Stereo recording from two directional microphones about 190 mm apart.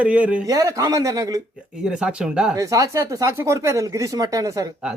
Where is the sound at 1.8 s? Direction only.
5° right (ahead or behind).